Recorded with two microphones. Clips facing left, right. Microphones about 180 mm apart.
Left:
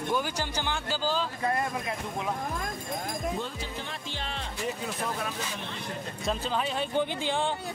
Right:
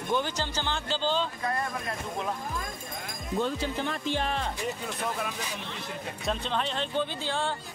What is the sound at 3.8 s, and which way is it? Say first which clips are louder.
Music: right 8 dB; 50° right (ahead or behind).